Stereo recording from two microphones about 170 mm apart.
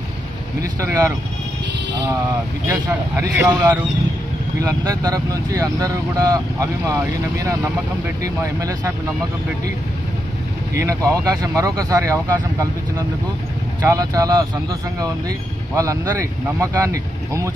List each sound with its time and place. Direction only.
0.7 s speech: 15° right (ahead or behind)
2.7 s speech: 15° right (ahead or behind)
10.7 s speech: 20° right (ahead or behind)
13.8 s speech: 20° right (ahead or behind)